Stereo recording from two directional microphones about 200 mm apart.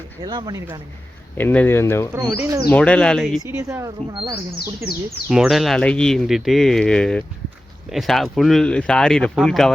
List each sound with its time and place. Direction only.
0.2 s speech: 20° right (ahead or behind)
1.4 s speech: 10° left (ahead or behind)
2.1 s speech: 10° right (ahead or behind)
2.6 s speech: 5° left (ahead or behind)
3.6 s speech: 15° right (ahead or behind)
5.3 s speech: centre (ahead or behind)